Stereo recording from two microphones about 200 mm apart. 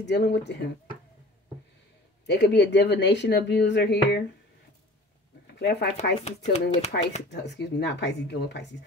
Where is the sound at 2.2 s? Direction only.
60° left (ahead or behind).